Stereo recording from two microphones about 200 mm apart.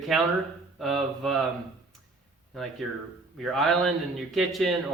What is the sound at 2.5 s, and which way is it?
Speech, centre (ahead or behind).